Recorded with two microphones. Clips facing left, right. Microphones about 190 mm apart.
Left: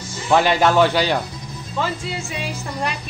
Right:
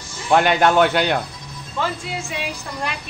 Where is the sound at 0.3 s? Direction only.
Centre (ahead or behind).